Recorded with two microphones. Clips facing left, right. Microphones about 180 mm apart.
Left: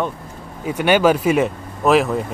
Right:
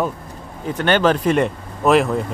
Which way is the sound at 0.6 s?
10° left (ahead or behind).